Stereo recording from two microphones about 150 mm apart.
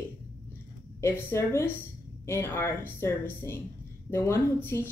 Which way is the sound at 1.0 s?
15° left (ahead or behind).